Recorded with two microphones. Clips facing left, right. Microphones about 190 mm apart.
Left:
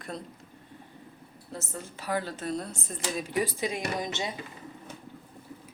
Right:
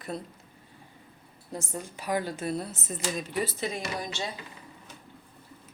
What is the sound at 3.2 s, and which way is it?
Speech, 15° left (ahead or behind).